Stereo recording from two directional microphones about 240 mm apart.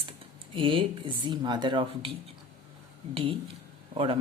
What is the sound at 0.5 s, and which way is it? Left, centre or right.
Speech, right.